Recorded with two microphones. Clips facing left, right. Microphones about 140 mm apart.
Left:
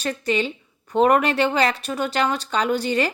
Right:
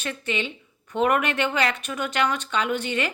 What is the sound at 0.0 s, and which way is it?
A woman's voice, 40° left (ahead or behind).